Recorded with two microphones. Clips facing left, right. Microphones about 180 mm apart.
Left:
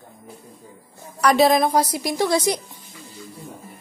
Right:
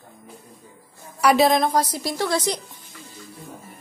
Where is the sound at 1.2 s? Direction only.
5° right (ahead or behind); by 2.6 s 15° left (ahead or behind).